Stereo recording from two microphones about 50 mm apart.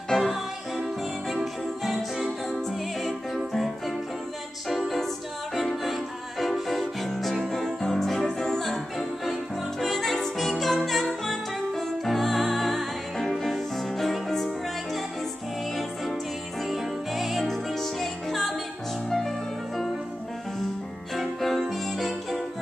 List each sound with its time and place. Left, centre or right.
0.2 s music: centre
16.6 s music: centre
21.1 s music: centre